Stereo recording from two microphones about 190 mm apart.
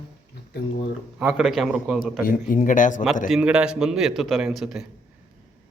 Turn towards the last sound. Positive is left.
turn(degrees=0)  # may be behind; listen again after turning